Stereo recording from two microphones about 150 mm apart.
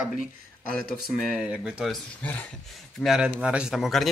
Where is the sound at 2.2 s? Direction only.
10° left (ahead or behind).